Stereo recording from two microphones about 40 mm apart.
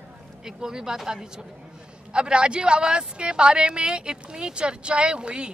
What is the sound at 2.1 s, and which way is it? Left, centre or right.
Speech, right.